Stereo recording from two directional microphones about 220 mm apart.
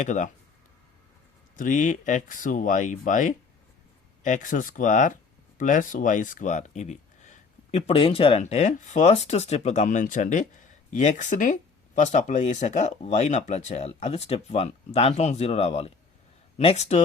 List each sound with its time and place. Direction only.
0.0 s speech: 35° left (ahead or behind)
1.5 s speech: 35° left (ahead or behind)